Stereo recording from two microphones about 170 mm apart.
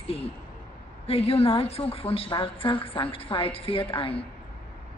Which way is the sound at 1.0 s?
35° left (ahead or behind).